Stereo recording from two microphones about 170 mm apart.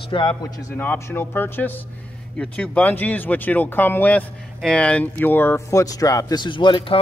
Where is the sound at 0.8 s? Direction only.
15° left (ahead or behind).